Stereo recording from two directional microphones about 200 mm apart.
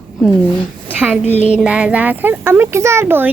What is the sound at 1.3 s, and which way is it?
Child singing, 35° left (ahead or behind).